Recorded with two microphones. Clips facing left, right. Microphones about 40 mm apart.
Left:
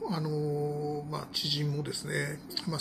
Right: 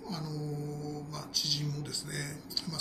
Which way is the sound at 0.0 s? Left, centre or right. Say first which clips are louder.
Left 7 dB; centre.